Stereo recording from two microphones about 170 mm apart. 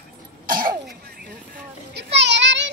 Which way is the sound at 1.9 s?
90° right.